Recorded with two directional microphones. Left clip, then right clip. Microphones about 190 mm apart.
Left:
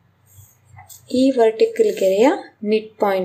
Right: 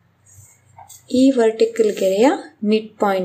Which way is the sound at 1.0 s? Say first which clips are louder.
Even; 5° right (ahead or behind).